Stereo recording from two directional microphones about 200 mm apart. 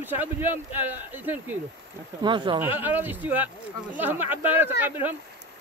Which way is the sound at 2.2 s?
25° right (ahead or behind).